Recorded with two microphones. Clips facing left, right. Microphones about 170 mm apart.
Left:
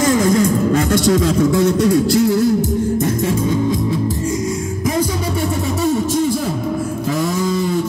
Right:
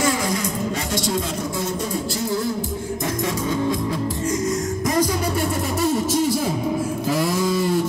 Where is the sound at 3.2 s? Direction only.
30° left (ahead or behind).